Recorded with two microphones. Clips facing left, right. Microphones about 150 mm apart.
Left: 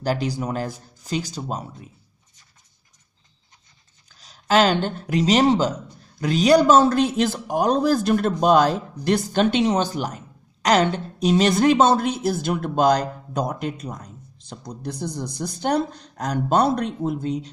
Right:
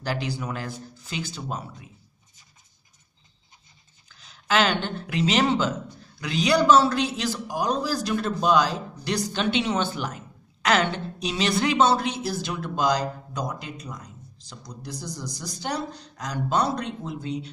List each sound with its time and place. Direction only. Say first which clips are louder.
0.0 s speech: left 5 dB; 40° left (ahead or behind)
4.1 s a woman's voice: left 5 dB; 40° left (ahead or behind)